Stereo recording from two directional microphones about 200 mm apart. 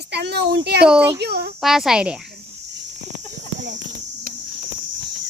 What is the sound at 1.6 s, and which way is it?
Speech, centre (ahead or behind).